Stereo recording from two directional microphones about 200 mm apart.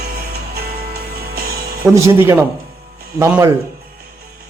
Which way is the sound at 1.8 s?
15° right (ahead or behind).